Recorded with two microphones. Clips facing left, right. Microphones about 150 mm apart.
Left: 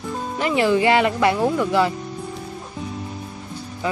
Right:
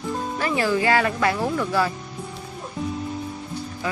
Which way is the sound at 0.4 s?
20° left (ahead or behind).